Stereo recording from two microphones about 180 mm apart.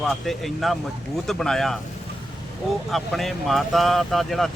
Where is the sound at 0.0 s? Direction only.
Centre (ahead or behind).